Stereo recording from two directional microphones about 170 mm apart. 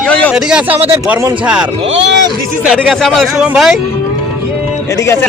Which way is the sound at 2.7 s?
Centre (ahead or behind).